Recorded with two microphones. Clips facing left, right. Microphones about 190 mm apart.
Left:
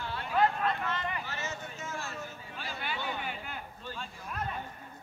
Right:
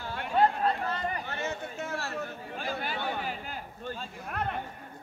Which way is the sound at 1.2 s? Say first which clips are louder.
Right 5 dB; 55° right (ahead or behind).